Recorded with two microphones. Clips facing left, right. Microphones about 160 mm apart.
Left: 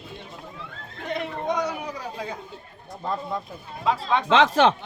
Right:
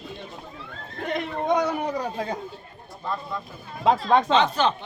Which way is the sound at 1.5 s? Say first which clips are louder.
Right 5 dB; 55° right (ahead or behind).